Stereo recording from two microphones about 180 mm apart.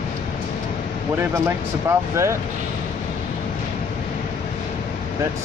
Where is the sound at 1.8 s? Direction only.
15° right (ahead or behind).